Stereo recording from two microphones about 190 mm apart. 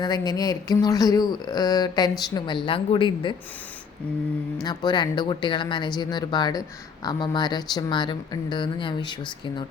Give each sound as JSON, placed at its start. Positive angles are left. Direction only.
{"t": 0.0, "sound": "speech", "side_deg": 20}
{"t": 4.6, "sound": "speech", "side_deg": 20}